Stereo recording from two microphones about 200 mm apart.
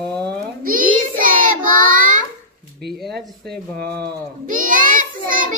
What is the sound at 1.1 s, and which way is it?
Child singing, 45° right (ahead or behind).